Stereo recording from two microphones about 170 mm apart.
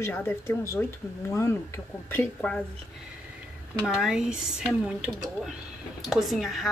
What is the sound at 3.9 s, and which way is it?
Speech, 5° right (ahead or behind).